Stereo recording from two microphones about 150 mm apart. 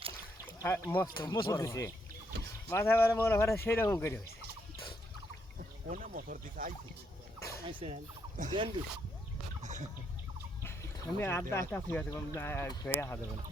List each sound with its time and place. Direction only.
0.4 s speech: 15° left (ahead or behind)
1.0 s speech: 25° left (ahead or behind)
5.9 s speech: 70° right (ahead or behind)
7.6 s speech: 35° right (ahead or behind); by 8.5 s 50° right (ahead or behind)
10.6 s a sound: 20° left (ahead or behind)
11.7 s speech: 15° left (ahead or behind)